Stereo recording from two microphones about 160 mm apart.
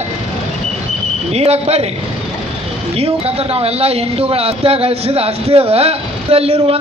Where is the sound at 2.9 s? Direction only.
40° right (ahead or behind).